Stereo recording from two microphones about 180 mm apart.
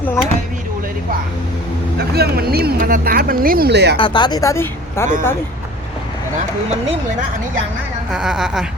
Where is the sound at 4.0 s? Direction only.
25° left (ahead or behind).